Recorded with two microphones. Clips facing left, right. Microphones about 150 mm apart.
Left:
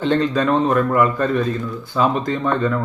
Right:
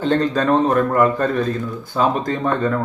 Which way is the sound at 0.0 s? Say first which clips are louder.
Even; 45° right (ahead or behind).